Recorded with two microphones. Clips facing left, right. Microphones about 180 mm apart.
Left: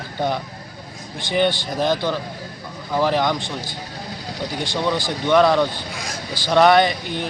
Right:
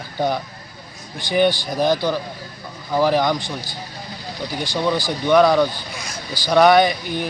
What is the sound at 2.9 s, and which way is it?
Speech, 5° right (ahead or behind).